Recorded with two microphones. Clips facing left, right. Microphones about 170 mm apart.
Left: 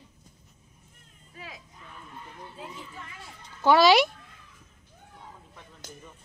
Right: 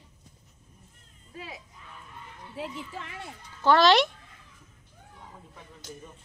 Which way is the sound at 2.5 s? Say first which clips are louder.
Right 9 dB; 90° right.